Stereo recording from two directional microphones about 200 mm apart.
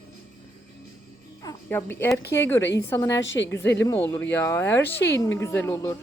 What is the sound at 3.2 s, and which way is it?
Speech, 65° left (ahead or behind).